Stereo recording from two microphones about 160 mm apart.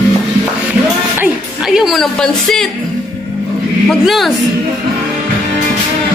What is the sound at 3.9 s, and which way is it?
Speech, centre (ahead or behind).